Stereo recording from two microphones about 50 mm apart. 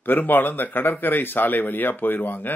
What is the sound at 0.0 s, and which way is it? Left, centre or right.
Speech, left.